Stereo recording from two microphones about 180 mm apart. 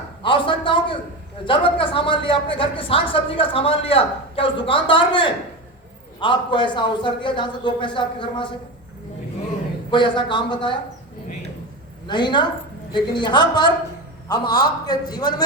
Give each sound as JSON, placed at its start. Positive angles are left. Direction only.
{"t": 0.2, "sound": "a sound", "side_deg": 25}
{"t": 1.5, "sound": "a woman's voice", "side_deg": 30}
{"t": 9.9, "sound": "a woman's voice", "side_deg": 25}
{"t": 12.0, "sound": "a woman's voice", "side_deg": 25}